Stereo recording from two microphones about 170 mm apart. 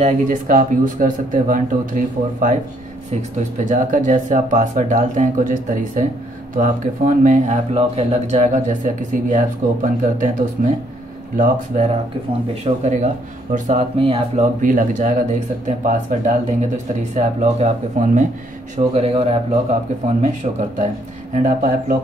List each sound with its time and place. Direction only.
0.0 s speech: 50° right (ahead or behind)
7.7 s speech: 35° right (ahead or behind)
14.6 s speech: 50° right (ahead or behind)
18.8 s speech: 35° right (ahead or behind)
20.7 s speech: 45° right (ahead or behind)